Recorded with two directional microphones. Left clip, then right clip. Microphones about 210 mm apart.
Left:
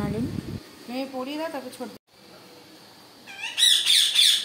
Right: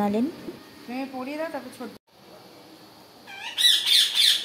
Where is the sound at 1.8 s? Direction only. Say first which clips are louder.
Left 2 dB; 15° left (ahead or behind).